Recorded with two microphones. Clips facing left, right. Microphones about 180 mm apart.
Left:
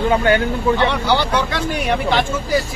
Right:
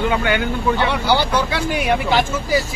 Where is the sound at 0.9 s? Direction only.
10° right (ahead or behind).